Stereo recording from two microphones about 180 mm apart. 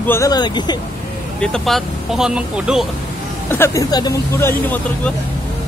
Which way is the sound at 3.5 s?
15° left (ahead or behind).